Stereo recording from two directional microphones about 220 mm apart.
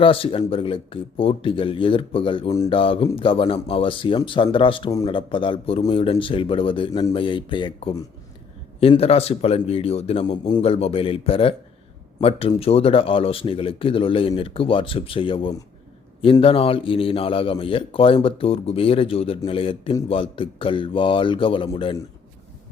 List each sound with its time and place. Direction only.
0.0 s speech: 25° left (ahead or behind)